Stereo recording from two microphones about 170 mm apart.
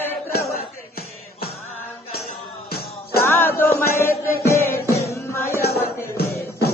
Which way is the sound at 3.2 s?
15° left (ahead or behind).